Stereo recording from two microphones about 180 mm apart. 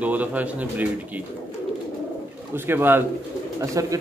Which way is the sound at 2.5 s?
10° right (ahead or behind).